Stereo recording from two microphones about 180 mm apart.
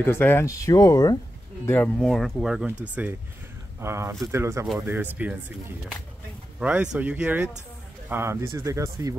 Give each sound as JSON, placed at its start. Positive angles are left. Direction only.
{"t": 0.0, "sound": "speech", "side_deg": 10}
{"t": 1.7, "sound": "speech", "side_deg": 5}
{"t": 6.6, "sound": "speech", "side_deg": -5}